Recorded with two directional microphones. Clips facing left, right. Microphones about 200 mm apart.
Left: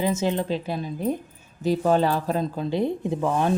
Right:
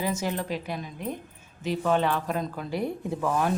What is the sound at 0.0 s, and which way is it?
A woman's voice, 25° left (ahead or behind).